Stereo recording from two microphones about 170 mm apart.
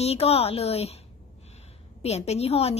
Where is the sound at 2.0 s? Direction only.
40° left (ahead or behind).